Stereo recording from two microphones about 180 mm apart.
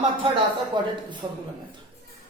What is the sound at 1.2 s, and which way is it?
Speech, 25° right (ahead or behind).